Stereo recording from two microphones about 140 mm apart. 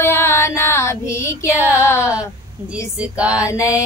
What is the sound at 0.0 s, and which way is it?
Female singing, 20° left (ahead or behind).